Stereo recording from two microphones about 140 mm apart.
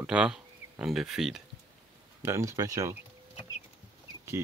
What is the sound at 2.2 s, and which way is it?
Speech, 20° right (ahead or behind).